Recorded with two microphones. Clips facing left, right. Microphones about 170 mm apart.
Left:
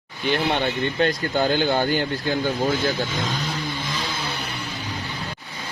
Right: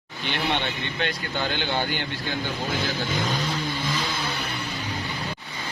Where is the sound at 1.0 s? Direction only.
40° left (ahead or behind).